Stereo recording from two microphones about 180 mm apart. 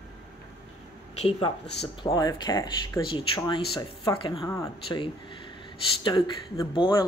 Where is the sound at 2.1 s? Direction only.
20° left (ahead or behind).